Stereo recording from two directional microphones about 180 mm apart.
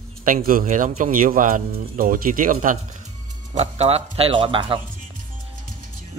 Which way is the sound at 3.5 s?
35° right (ahead or behind).